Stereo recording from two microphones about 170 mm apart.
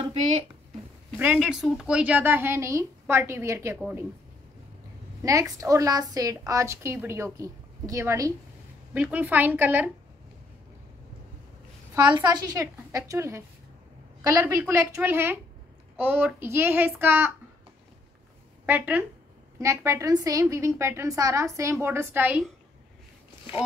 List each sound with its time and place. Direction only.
1.1 s a woman's voice: 5° right (ahead or behind)
5.2 s a woman's voice: 20° right (ahead or behind)
11.9 s a woman's voice: 20° right (ahead or behind)
14.4 s a woman's voice: 15° right (ahead or behind)
18.7 s a woman's voice: 10° right (ahead or behind)